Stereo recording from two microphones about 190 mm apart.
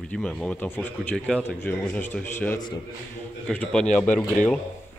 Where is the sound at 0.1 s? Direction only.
5° left (ahead or behind).